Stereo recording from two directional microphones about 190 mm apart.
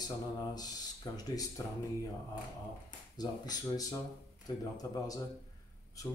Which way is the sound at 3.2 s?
20° left (ahead or behind).